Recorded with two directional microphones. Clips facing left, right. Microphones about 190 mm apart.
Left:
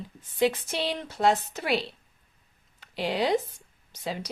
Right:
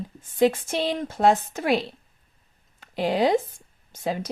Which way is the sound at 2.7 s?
50° right (ahead or behind).